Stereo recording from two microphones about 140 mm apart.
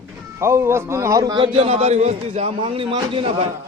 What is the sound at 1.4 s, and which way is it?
A man's voice, 45° right (ahead or behind).